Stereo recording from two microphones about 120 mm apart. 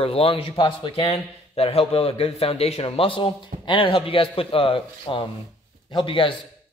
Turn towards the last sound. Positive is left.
turn(degrees=45)  # may be behind; listen again after turning